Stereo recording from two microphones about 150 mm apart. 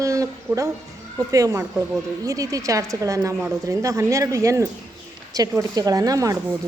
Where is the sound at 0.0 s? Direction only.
20° right (ahead or behind).